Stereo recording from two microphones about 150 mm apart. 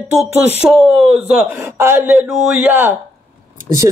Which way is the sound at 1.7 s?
15° right (ahead or behind).